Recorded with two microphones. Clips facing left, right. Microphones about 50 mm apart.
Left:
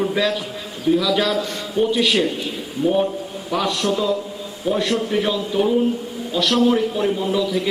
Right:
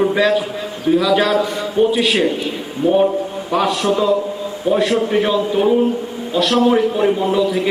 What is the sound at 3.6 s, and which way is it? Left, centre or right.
A man's voice, centre.